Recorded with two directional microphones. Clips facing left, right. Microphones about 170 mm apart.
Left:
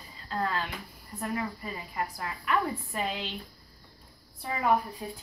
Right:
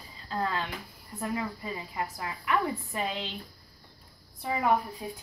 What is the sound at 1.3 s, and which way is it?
A woman's voice, 20° right (ahead or behind).